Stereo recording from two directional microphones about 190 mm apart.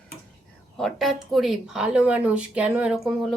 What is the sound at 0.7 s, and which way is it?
A woman's voice, centre (ahead or behind).